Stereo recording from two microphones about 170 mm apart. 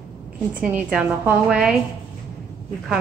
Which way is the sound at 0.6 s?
5° right (ahead or behind).